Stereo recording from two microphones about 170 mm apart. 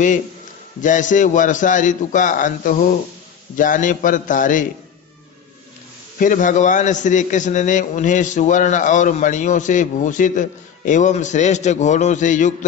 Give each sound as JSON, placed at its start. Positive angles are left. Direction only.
{"t": 0.8, "sound": "a man's voice", "side_deg": 50}
{"t": 6.1, "sound": "a man's voice", "side_deg": 50}